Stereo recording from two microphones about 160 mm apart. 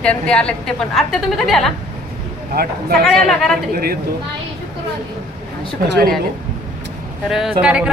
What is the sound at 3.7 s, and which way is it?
Speech, 70° right (ahead or behind).